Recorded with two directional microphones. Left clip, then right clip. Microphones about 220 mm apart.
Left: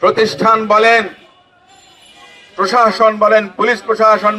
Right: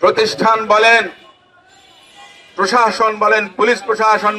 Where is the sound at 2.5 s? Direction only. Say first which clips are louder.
Left 2 dB; 50° right (ahead or behind).